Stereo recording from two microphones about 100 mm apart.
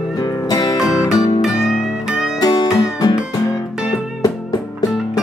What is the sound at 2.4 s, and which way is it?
Music, 40° left (ahead or behind).